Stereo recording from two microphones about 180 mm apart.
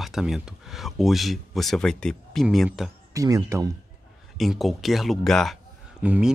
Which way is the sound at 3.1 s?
15° right (ahead or behind).